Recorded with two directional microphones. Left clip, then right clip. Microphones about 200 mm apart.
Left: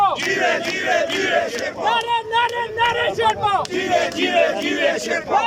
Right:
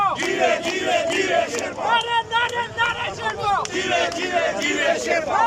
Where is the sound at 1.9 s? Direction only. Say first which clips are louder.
Even; 20° left (ahead or behind); by 3.6 s 35° left (ahead or behind).